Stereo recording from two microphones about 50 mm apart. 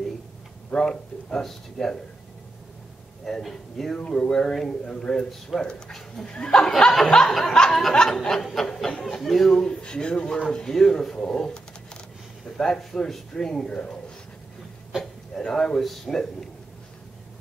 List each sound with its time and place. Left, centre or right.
0.7 s speech: centre
3.3 s a sound: centre
3.9 s speech: left
4.2 s speech: centre
8.5 s a sound: centre
9.2 s speech: centre
15.4 s speech: centre